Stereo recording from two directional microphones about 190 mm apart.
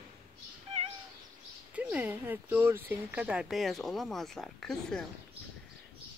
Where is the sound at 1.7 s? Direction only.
10° right (ahead or behind).